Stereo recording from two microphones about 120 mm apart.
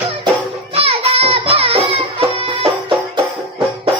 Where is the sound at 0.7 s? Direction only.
55° right (ahead or behind).